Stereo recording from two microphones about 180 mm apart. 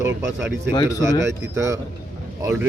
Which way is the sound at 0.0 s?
10° right (ahead or behind).